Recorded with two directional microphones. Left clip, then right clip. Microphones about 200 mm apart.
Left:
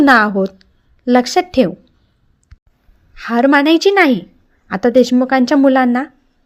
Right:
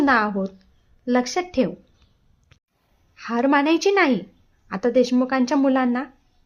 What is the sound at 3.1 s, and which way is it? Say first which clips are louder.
A woman's voice: left 8 dB; 25° left (ahead or behind).